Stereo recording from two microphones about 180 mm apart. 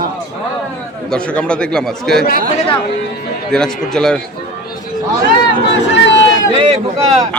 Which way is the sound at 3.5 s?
5° left (ahead or behind).